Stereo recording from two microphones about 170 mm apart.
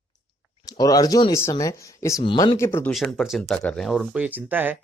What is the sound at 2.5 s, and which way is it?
Speech, 15° left (ahead or behind).